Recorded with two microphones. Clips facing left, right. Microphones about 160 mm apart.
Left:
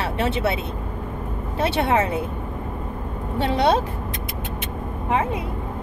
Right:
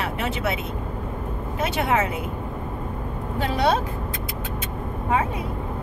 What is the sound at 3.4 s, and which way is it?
Speech, 25° left (ahead or behind).